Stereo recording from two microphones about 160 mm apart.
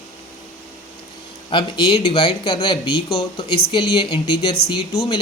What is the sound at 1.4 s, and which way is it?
Speech, 30° left (ahead or behind).